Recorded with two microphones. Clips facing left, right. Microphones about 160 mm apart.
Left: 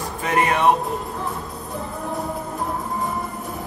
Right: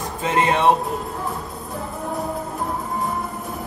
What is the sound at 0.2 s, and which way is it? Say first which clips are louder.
Speech: right 1 dB; 25° right (ahead or behind).